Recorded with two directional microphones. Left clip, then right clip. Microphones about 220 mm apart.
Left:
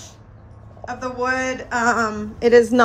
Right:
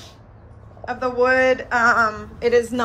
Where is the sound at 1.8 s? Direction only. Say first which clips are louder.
Right 3 dB; 30° left (ahead or behind).